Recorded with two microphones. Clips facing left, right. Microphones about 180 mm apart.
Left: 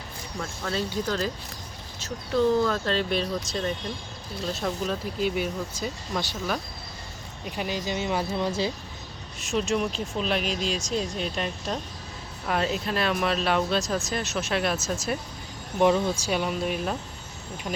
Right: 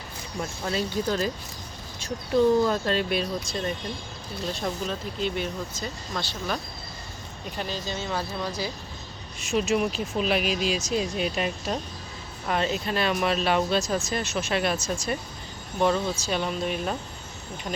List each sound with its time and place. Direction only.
0.3 s speech: 15° right (ahead or behind); by 8.7 s 25° left (ahead or behind)
9.4 s speech: centre (ahead or behind)
15.8 s speech: 15° left (ahead or behind)